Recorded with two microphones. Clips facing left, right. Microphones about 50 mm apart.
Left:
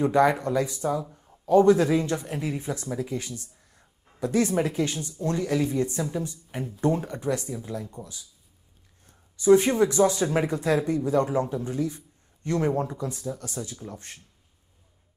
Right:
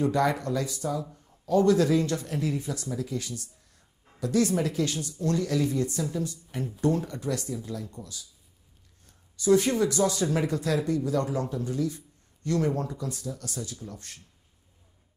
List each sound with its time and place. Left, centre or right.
0.0 s a man's voice: left